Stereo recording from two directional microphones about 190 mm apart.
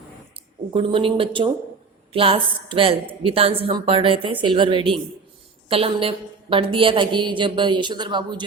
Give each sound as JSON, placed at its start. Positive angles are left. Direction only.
{"t": 0.7, "sound": "a woman's voice", "side_deg": -30}